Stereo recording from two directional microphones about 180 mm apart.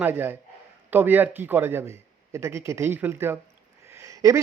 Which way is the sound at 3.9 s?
15° right (ahead or behind).